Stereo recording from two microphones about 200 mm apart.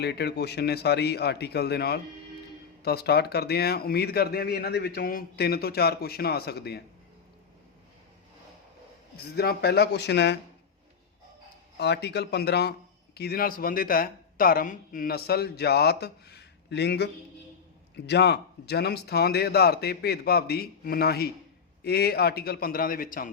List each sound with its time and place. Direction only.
0.0 s a man's voice: 55° left (ahead or behind)
9.3 s a man's voice: 55° left (ahead or behind)
11.8 s a man's voice: 55° left (ahead or behind)